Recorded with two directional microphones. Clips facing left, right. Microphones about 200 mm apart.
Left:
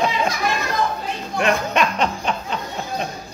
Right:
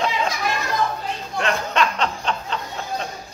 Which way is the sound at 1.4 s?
15° left (ahead or behind).